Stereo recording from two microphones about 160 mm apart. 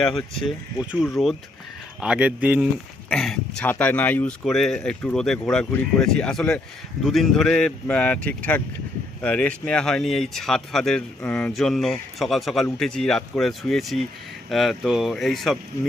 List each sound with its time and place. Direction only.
0.4 s speech: 5° right (ahead or behind)
3.1 s speech: 5° left (ahead or behind)